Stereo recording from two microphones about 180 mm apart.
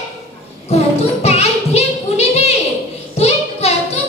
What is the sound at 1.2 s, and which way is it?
Music, 35° left (ahead or behind).